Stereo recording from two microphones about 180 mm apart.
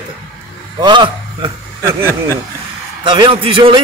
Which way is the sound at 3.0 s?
25° right (ahead or behind).